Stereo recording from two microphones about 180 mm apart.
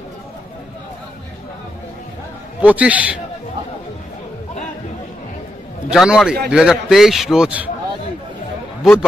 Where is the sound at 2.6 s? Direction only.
10° right (ahead or behind).